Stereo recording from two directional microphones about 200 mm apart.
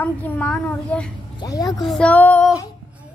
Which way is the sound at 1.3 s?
20° left (ahead or behind).